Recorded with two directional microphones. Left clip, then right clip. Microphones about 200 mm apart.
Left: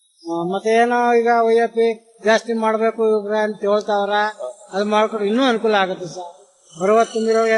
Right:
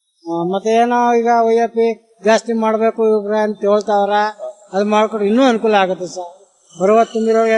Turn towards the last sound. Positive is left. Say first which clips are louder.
# right 3 dB
turn(degrees=-50)  # may be behind; listen again after turning